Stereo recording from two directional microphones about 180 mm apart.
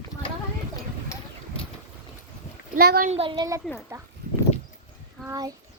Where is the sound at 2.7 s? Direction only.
60° right (ahead or behind).